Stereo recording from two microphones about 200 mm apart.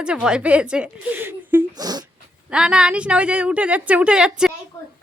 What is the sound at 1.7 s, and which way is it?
Speech, 20° right (ahead or behind).